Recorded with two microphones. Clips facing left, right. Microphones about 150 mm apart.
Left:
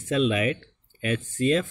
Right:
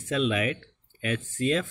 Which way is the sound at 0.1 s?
Centre (ahead or behind).